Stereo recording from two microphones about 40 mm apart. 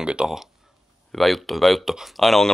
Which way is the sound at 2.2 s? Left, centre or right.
Centre.